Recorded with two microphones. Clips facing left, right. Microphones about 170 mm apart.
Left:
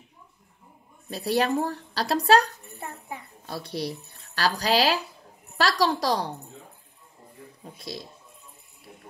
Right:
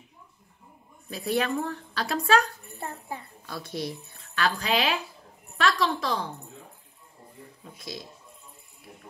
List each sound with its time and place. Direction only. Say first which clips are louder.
1.1 s a woman's voice: left 3 dB; 35° left (ahead or behind)
2.8 s jingle bell: right 2 dB; 25° right (ahead or behind)
3.4 s a woman's voice: left 2 dB; 30° left (ahead or behind)
7.6 s speech: left 2 dB; 30° left (ahead or behind)